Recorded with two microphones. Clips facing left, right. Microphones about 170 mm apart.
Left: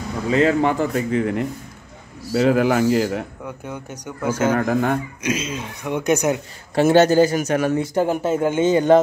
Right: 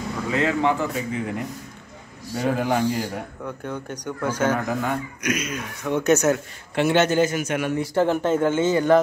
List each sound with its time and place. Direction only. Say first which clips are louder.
0.5 s speech: left 4 dB; 50° left (ahead or behind)
2.3 s speech: left 6 dB; 85° left
3.4 s speech: right 1 dB; 10° left (ahead or behind)
4.5 s speech: left 5 dB; 55° left (ahead or behind)
5.2 s speech: left 2 dB; 25° left (ahead or behind)
5.9 s speech: even; 15° left (ahead or behind)
6.7 s a man's voice: left 5 dB; 40° left (ahead or behind)
7.7 s speech: left 1 dB; 20° left (ahead or behind)